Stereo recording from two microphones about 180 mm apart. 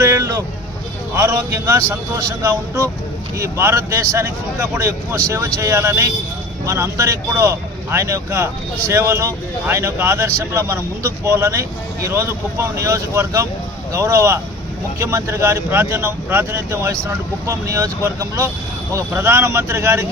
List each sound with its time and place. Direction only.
0.0 s vehicle: 15° right (ahead or behind)
1.1 s speech: 10° right (ahead or behind)